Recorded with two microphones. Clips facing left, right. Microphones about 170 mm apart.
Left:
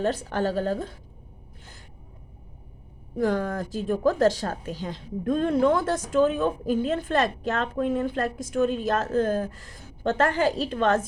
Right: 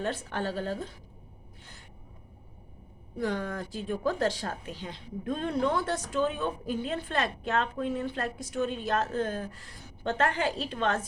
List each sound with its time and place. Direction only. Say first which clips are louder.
0.0 s a woman's voice: left 7 dB; 40° left (ahead or behind)
3.2 s a woman's voice: left 6 dB; 45° left (ahead or behind)